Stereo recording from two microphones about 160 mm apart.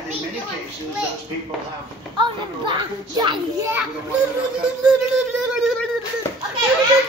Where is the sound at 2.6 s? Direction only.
30° right (ahead or behind).